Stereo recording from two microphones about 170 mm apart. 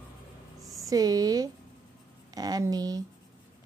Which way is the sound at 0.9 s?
20° right (ahead or behind).